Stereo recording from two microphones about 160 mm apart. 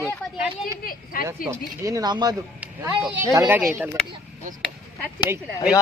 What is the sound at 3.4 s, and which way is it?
Speech, 5° right (ahead or behind).